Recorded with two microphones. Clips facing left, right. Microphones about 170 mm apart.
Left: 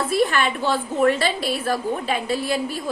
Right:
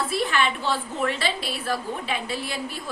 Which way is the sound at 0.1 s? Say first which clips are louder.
Left 4 dB; 45° left (ahead or behind).